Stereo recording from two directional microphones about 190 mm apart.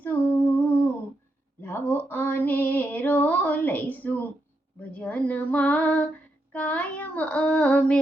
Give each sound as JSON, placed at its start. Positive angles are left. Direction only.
{"t": 0.0, "sound": "humming", "side_deg": 10}
{"t": 1.6, "sound": "female singing", "side_deg": 10}
{"t": 6.5, "sound": "child singing", "side_deg": 10}